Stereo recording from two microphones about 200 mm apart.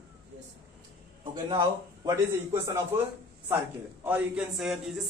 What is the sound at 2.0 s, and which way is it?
Speech, 15° right (ahead or behind).